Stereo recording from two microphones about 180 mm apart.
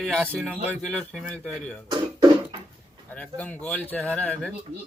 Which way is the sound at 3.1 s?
10° left (ahead or behind).